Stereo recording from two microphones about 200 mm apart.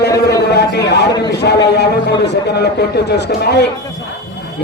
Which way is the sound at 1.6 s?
55° left (ahead or behind).